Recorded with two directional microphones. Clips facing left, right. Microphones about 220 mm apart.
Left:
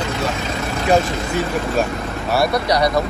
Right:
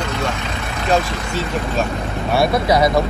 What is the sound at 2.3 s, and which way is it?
Speech, centre (ahead or behind).